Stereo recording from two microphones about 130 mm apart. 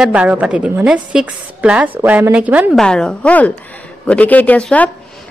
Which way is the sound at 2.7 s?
5° left (ahead or behind).